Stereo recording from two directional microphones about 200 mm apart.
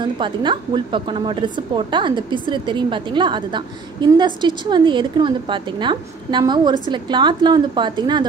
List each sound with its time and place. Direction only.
0.2 s speech: 25° right (ahead or behind)